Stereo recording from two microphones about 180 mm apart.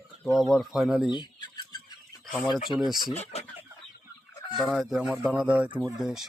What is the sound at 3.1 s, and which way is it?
Chicken, 35° left (ahead or behind).